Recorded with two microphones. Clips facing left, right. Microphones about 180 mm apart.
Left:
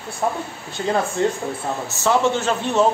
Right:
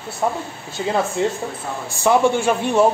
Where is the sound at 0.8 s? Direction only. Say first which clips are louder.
Even; 5° right (ahead or behind).